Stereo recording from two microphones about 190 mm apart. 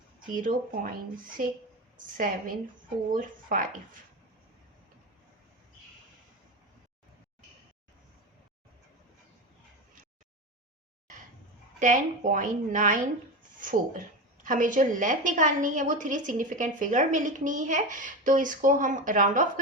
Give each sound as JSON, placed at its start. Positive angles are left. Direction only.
{"t": 0.3, "sound": "a woman's voice", "side_deg": -45}
{"t": 2.0, "sound": "a woman's voice", "side_deg": -45}
{"t": 11.8, "sound": "a woman's voice", "side_deg": -40}